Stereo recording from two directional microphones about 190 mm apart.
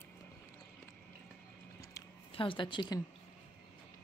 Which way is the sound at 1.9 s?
25° left (ahead or behind).